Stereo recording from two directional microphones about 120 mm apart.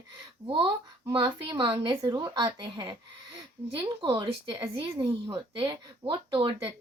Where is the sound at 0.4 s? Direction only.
45° right (ahead or behind).